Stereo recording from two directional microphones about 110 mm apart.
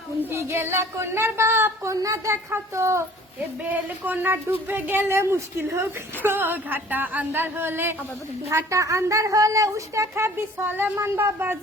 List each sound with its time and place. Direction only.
0.2 s speech: 25° right (ahead or behind)